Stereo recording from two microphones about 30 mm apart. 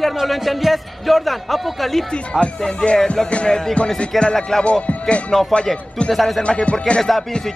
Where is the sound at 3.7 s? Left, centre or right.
Left.